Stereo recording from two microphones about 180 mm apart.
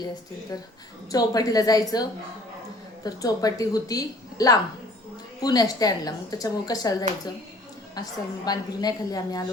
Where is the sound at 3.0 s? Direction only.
20° left (ahead or behind).